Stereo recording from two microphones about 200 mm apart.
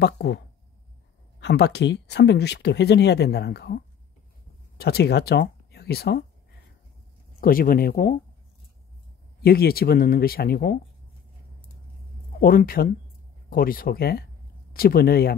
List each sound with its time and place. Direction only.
0.0 s speech: 55° left (ahead or behind)
1.4 s speech: 55° left (ahead or behind)
7.3 s speech: 45° left (ahead or behind)
9.4 s speech: 50° left (ahead or behind)
12.4 s speech: 45° left (ahead or behind)